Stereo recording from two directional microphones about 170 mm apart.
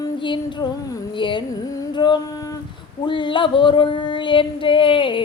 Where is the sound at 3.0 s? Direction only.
30° left (ahead or behind).